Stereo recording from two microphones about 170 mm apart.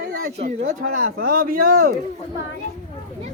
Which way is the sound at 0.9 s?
60° right (ahead or behind).